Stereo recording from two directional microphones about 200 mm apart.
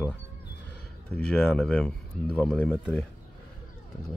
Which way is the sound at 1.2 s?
5° left (ahead or behind).